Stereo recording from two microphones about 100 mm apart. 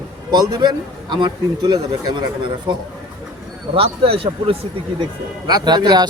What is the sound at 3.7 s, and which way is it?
Speech, 70° right (ahead or behind).